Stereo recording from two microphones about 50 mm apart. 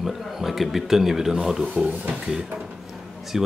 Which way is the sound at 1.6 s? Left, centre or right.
Right.